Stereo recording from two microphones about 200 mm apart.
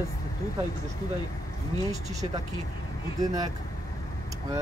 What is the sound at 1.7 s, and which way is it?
Speech, 15° left (ahead or behind).